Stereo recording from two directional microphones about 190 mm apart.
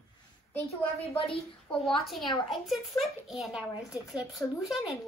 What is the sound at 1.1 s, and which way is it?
Speech, 30° left (ahead or behind).